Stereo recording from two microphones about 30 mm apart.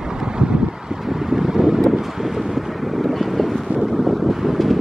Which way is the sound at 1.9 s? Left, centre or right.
Centre.